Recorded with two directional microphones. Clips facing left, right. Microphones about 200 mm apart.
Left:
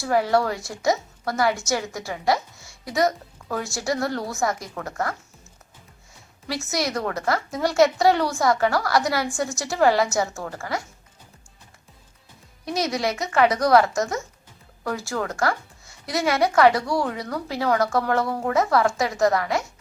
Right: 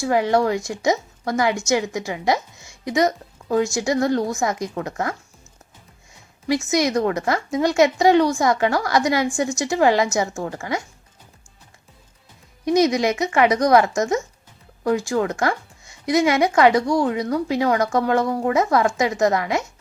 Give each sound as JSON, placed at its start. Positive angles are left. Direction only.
{"t": 0.0, "sound": "speech", "side_deg": -15}
{"t": 6.7, "sound": "speech", "side_deg": -15}
{"t": 12.6, "sound": "speech", "side_deg": -20}